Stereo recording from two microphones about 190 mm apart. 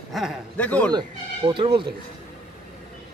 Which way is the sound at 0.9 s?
25° right (ahead or behind).